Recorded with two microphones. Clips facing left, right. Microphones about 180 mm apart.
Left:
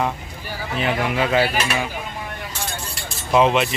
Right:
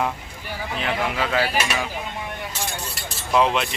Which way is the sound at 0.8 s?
10° left (ahead or behind).